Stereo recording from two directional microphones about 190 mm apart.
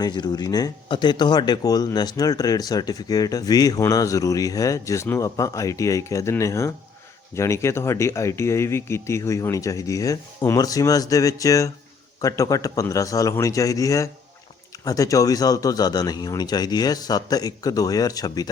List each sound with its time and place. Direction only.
0.0 s speech: 20° left (ahead or behind)